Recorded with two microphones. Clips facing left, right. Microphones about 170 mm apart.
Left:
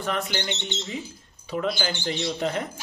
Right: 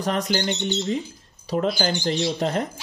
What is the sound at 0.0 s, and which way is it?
A man's voice, 40° right (ahead or behind).